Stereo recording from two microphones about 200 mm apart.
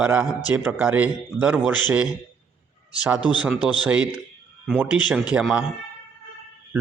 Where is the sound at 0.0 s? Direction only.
10° right (ahead or behind).